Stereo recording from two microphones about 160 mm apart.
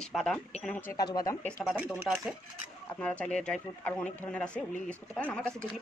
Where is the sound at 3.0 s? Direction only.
5° left (ahead or behind).